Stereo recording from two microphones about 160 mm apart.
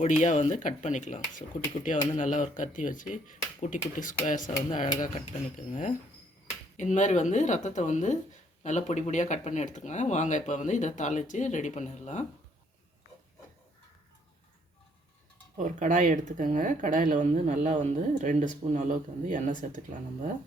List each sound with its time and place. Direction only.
0.0 s speech: 50° left (ahead or behind)
6.5 s speech: 45° left (ahead or behind)
15.5 s speech: 55° right (ahead or behind)